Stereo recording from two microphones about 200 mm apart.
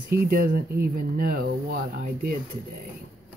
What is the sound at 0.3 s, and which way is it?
Speech, 50° right (ahead or behind).